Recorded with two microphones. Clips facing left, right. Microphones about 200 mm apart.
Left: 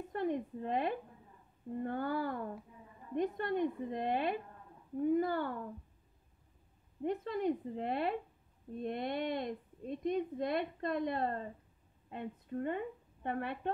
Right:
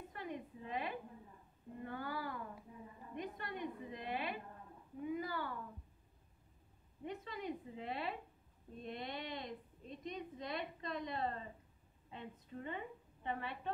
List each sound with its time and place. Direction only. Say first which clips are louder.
0.1 s a sound: left 13 dB; 50° left (ahead or behind)
1.8 s a woman's voice: left 8 dB; 50° left (ahead or behind)
7.0 s a woman's voice: left 10 dB; 55° left (ahead or behind)